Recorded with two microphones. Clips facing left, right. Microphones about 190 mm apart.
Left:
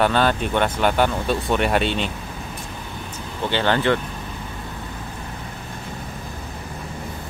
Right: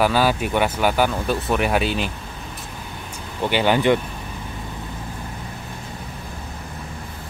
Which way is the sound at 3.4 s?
15° right (ahead or behind).